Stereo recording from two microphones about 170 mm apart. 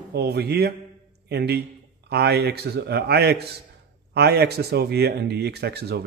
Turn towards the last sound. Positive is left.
turn(degrees=-70)  # may be behind; listen again after turning